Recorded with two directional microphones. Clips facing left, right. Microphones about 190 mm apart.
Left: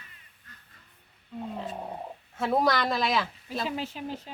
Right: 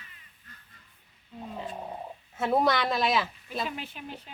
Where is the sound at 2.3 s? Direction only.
5° right (ahead or behind).